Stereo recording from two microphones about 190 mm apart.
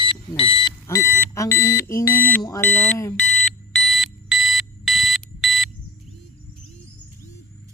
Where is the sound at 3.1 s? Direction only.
5° left (ahead or behind).